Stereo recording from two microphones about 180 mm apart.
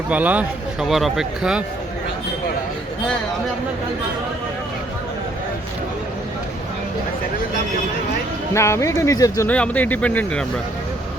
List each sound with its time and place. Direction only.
0.1 s speech: 10° right (ahead or behind)
8.5 s speech: 15° left (ahead or behind)
9.5 s speech: 10° left (ahead or behind)